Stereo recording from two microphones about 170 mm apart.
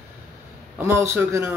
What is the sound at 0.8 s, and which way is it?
Speech, 15° right (ahead or behind).